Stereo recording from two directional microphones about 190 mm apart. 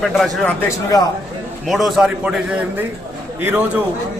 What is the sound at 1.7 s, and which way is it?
Speech, centre (ahead or behind).